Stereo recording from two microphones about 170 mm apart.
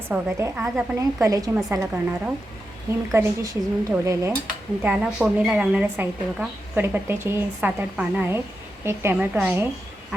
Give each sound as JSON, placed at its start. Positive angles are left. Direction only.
{"t": 0.1, "sound": "a woman's voice", "side_deg": -15}